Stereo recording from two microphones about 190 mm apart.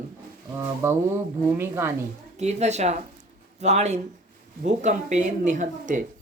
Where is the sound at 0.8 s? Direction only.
15° right (ahead or behind).